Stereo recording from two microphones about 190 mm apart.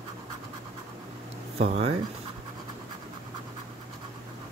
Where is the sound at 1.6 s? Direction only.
30° right (ahead or behind).